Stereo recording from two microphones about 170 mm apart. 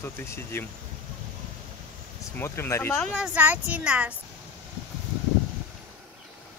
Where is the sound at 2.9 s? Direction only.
Centre (ahead or behind).